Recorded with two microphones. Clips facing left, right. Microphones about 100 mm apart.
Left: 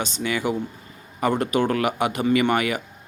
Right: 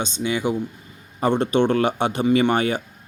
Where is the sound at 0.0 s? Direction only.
20° right (ahead or behind).